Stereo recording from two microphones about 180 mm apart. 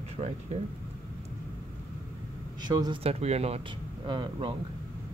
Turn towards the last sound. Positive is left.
turn(degrees=-25)  # may be behind; listen again after turning